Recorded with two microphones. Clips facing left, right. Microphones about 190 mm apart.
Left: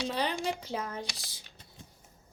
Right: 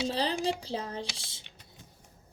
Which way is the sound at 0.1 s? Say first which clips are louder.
Right 2 dB; 30° right (ahead or behind).